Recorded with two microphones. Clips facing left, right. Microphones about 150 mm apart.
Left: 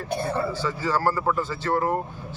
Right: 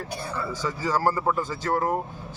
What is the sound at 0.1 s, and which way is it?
Speech, 55° left (ahead or behind).